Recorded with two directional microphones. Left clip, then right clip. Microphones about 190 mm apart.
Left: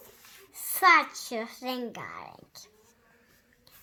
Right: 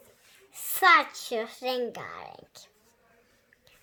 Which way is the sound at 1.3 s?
20° right (ahead or behind).